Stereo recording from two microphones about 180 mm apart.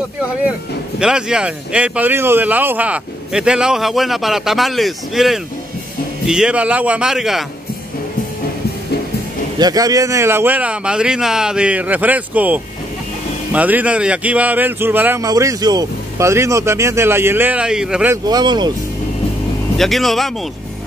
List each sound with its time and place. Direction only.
0.9 s a man's voice: 5° right (ahead or behind)
9.6 s speech: 20° right (ahead or behind); by 18.1 s 5° right (ahead or behind)
18.1 s speech: 20° right (ahead or behind)
19.8 s a man's voice: centre (ahead or behind)